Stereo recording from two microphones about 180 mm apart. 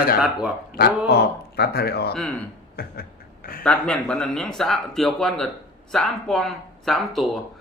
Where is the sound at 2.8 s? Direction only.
55° left (ahead or behind).